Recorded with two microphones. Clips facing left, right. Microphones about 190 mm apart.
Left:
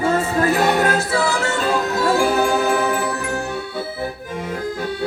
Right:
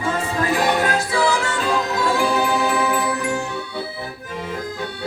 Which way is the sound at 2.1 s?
45° left (ahead or behind).